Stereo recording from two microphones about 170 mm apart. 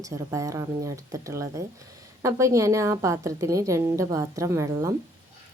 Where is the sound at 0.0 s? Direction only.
20° right (ahead or behind).